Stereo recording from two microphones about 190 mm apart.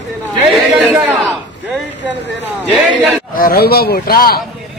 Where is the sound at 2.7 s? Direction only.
5° right (ahead or behind).